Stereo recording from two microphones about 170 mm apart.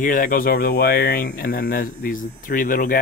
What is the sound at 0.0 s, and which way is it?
Speech, 50° left (ahead or behind).